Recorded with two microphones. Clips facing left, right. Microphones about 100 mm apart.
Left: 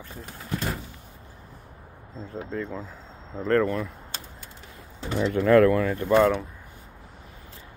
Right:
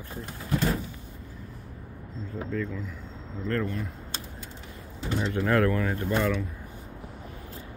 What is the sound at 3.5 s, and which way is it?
Speech, 90° left.